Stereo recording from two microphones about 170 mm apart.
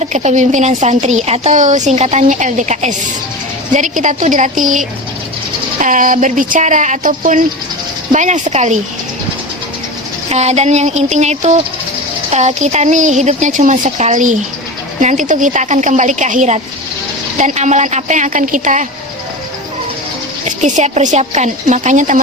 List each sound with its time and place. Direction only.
0.0 s a woman's voice: 45° right (ahead or behind)
10.2 s a sound: 40° right (ahead or behind)
12.3 s a woman's voice: 40° right (ahead or behind)
20.4 s a woman's voice: 40° right (ahead or behind)